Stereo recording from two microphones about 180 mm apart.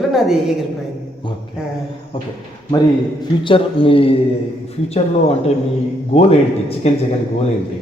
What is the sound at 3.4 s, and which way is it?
Speech, 30° left (ahead or behind).